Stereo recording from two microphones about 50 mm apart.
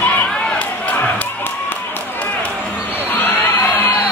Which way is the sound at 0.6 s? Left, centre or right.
Left.